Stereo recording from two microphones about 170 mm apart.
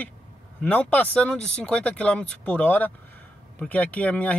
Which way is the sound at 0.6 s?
10° left (ahead or behind).